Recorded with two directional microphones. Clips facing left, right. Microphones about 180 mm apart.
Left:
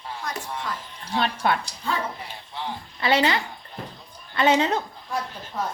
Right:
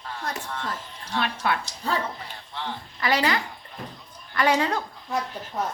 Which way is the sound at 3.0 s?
25° left (ahead or behind).